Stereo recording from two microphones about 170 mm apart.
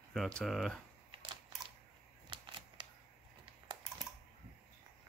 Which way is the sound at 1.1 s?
30° right (ahead or behind).